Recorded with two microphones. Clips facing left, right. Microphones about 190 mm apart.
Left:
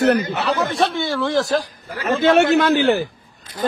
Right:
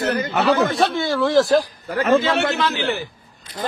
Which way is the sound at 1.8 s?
55° right (ahead or behind).